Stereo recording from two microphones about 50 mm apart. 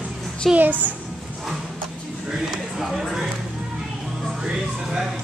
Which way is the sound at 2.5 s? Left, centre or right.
Centre.